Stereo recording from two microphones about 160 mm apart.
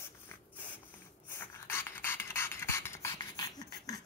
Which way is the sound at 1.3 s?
15° left (ahead or behind).